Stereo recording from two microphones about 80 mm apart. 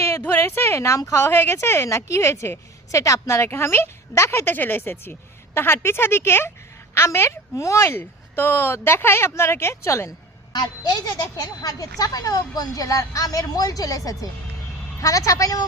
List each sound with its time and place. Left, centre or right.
0.2 s a sound: left
0.4 s speech: left
10.5 s a woman's voice: left